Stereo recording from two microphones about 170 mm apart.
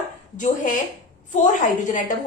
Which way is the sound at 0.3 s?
45° left (ahead or behind).